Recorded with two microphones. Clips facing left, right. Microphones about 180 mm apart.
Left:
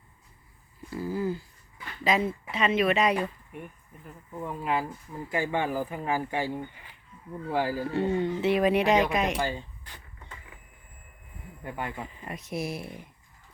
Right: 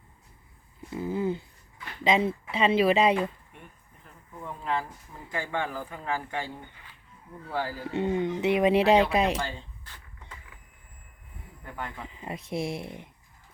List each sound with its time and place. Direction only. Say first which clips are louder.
0.9 s a sound: right 1 dB; 20° right (ahead or behind)
2.0 s speech: right 2 dB; 25° right (ahead or behind)
4.4 s speech: left 2 dB; 10° left (ahead or behind)
7.9 s speech: left 1 dB; 20° right (ahead or behind)
9.4 s a sound: left 4 dB; 15° left (ahead or behind)
11.6 s speech: left 3 dB; 15° left (ahead or behind)
12.2 s speech: right 3 dB; 25° right (ahead or behind)